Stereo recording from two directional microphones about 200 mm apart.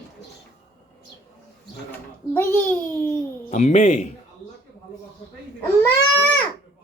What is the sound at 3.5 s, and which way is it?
Speech, 35° left (ahead or behind).